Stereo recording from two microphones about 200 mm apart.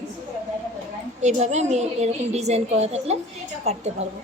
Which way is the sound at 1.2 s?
35° right (ahead or behind).